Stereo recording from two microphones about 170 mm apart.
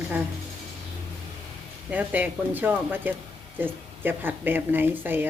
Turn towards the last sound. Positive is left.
turn(degrees=-10)  # may be behind; listen again after turning